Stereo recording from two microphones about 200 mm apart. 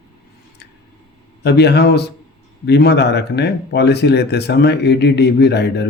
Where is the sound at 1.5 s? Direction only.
55° left (ahead or behind).